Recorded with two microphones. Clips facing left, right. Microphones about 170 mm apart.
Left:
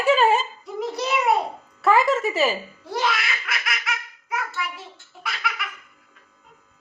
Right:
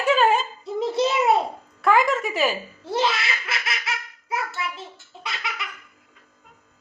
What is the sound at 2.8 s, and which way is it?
Belly laugh, 25° right (ahead or behind).